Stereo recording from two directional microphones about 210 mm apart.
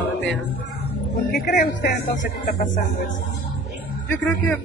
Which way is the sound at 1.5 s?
45° left (ahead or behind).